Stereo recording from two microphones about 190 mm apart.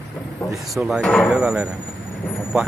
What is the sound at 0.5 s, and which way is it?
Speech, centre (ahead or behind).